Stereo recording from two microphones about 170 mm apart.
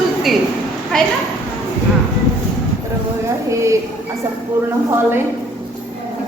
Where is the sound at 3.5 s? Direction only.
15° right (ahead or behind).